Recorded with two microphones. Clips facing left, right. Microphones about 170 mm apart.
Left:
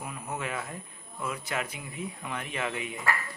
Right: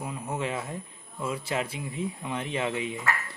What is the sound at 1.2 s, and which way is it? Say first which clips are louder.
A man's voice: right 3 dB; 30° right (ahead or behind).